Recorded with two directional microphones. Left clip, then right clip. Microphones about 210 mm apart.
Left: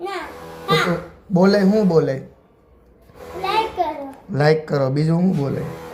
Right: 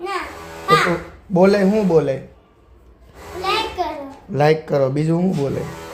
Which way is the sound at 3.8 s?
20° right (ahead or behind).